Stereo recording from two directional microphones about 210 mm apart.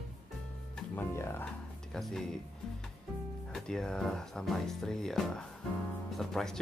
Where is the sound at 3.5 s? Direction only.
5° left (ahead or behind).